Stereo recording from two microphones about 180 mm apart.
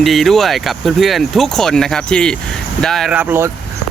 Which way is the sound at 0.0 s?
Centre (ahead or behind).